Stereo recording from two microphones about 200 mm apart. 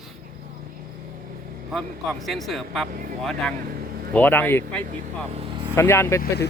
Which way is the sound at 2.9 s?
45° right (ahead or behind).